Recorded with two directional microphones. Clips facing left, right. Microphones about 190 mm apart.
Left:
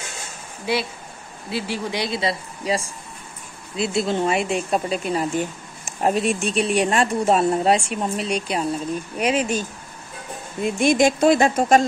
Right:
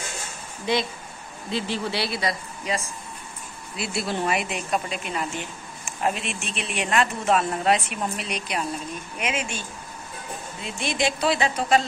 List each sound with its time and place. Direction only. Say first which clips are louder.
0.7 s speech: left 1 dB; 5° left (ahead or behind); by 2.9 s 30° left (ahead or behind)
4.0 s a woman's voice: left 3 dB; 20° left (ahead or behind); by 11.8 s 45° left (ahead or behind)